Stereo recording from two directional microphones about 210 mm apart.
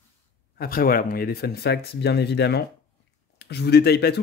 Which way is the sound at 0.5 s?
45° left (ahead or behind).